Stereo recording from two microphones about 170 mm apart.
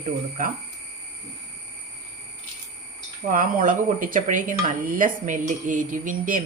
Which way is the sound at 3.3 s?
55° right (ahead or behind).